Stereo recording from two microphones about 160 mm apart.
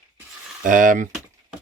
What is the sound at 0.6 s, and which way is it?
Speech, 55° right (ahead or behind).